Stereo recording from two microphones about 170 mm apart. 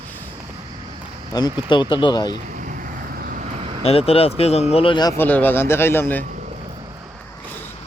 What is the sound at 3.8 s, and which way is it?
Speech, 35° left (ahead or behind).